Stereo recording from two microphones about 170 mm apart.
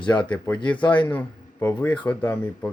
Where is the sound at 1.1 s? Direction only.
10° left (ahead or behind).